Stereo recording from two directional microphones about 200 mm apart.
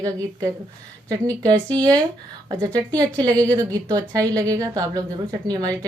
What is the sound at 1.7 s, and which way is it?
A woman's voice, 20° right (ahead or behind).